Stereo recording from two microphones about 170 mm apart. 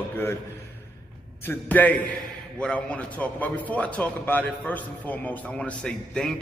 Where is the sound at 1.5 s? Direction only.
10° left (ahead or behind).